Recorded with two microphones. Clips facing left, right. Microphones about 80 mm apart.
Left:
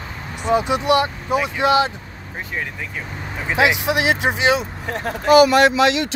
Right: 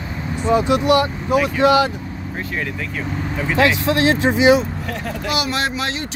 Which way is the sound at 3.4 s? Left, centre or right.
Centre.